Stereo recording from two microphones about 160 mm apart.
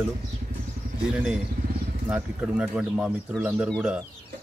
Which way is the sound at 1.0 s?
5° right (ahead or behind).